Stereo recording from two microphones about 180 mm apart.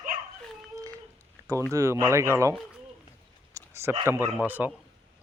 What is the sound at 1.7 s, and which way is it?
Speech, 15° right (ahead or behind).